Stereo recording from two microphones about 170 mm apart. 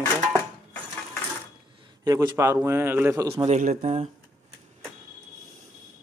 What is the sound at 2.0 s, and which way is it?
A man's voice, 20° right (ahead or behind).